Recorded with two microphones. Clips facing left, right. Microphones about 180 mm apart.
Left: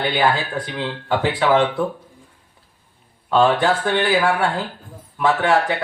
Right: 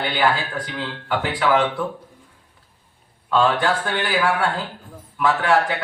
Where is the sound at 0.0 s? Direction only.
25° left (ahead or behind).